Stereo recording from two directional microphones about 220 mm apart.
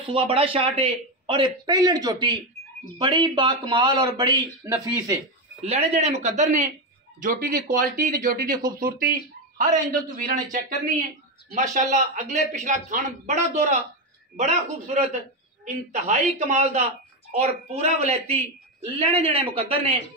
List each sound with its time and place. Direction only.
0.0 s a man's voice: 25° right (ahead or behind)
5.6 s a man's voice: 30° right (ahead or behind)